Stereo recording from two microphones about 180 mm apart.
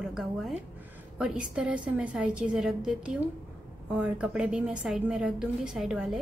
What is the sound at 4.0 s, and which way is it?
A woman's voice, 5° right (ahead or behind).